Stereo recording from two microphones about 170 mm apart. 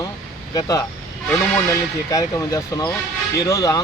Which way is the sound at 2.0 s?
20° left (ahead or behind).